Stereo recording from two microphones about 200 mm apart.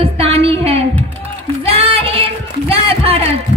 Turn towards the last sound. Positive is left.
turn(degrees=-30)  # may be behind; listen again after turning